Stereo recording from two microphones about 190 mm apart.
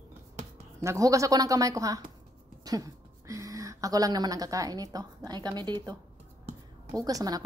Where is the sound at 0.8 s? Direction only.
15° right (ahead or behind).